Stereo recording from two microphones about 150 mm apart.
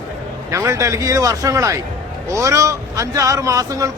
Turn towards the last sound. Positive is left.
turn(degrees=-20)  # may be behind; listen again after turning